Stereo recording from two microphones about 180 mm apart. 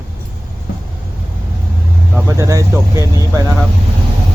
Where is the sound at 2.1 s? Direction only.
15° right (ahead or behind).